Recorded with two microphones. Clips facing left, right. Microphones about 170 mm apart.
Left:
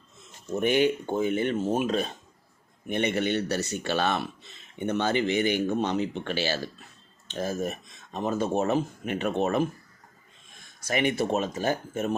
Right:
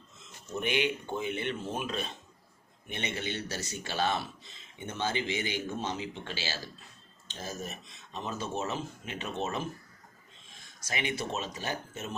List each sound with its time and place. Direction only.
0.5 s speech: 45° left (ahead or behind)
2.9 s speech: 55° left (ahead or behind)
10.8 s speech: 55° left (ahead or behind)